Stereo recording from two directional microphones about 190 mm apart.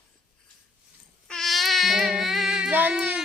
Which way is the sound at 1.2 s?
Centre (ahead or behind).